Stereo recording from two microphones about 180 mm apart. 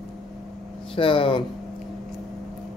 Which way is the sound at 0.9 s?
30° left (ahead or behind).